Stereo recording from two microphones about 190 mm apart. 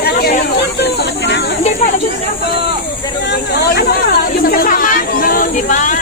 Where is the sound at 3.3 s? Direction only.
55° left (ahead or behind).